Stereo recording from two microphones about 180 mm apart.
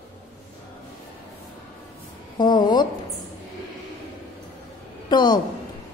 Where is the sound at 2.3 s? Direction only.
25° left (ahead or behind).